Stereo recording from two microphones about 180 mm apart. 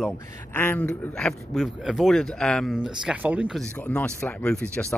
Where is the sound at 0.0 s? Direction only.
10° left (ahead or behind); by 3.6 s 5° right (ahead or behind).